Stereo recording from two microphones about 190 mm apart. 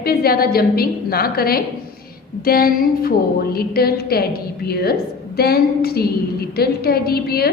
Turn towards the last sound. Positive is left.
turn(degrees=55)  # may be behind; listen again after turning